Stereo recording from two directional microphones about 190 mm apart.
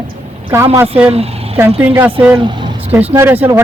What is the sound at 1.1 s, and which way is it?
Speech, 30° right (ahead or behind).